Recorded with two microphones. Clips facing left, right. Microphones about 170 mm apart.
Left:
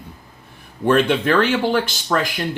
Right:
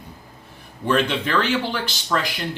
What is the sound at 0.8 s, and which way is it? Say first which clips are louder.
Speech: left 5 dB; 50° left (ahead or behind).